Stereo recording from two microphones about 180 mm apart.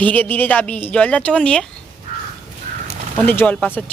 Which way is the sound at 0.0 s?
10° left (ahead or behind).